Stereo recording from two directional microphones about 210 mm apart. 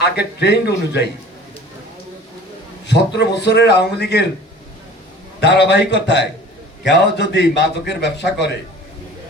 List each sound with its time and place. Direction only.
0.0 s a man's voice: 50° left (ahead or behind)
2.8 s a man's voice: 55° left (ahead or behind)
5.4 s a man's voice: 55° left (ahead or behind)